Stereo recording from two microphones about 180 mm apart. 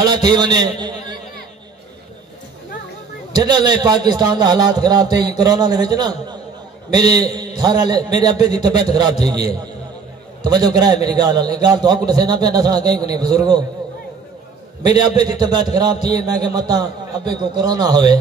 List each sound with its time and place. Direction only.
0.0 s a man's voice: 25° right (ahead or behind)
3.3 s a man's voice: 25° right (ahead or behind)
14.9 s a man's voice: 25° right (ahead or behind)